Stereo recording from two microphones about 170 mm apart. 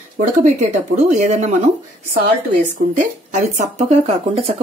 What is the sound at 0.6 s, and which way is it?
Speech, 50° right (ahead or behind).